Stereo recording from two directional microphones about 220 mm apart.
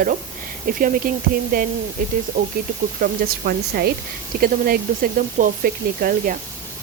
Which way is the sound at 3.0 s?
45° right (ahead or behind).